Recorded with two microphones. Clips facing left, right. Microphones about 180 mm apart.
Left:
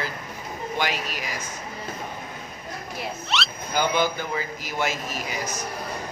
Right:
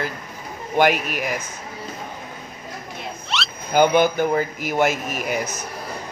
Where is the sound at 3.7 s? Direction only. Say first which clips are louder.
Right 7 dB; 50° right (ahead or behind).